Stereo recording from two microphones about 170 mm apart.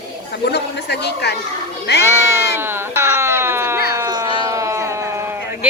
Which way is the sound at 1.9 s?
75° left (ahead or behind).